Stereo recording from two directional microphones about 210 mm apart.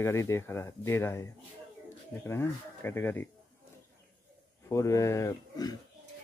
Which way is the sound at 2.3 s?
10° left (ahead or behind).